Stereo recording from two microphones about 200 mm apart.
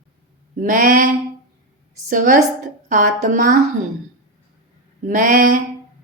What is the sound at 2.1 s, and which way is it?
Speech, 45° right (ahead or behind).